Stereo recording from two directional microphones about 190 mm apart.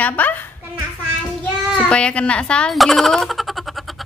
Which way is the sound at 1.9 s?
5° left (ahead or behind).